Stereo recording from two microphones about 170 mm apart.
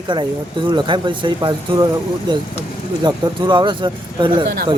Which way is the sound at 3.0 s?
25° right (ahead or behind).